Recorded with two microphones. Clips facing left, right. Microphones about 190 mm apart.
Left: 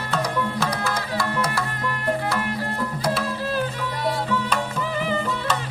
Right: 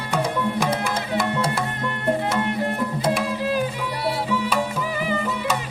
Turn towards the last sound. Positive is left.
turn(degrees=-10)  # may be behind; listen again after turning